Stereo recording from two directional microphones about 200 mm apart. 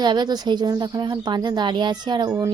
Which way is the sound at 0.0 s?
20° right (ahead or behind).